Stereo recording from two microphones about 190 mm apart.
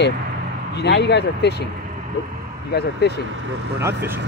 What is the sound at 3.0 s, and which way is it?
Speech, 60° left (ahead or behind).